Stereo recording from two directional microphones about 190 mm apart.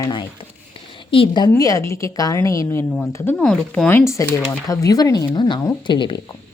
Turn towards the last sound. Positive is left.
turn(degrees=25)  # may be behind; listen again after turning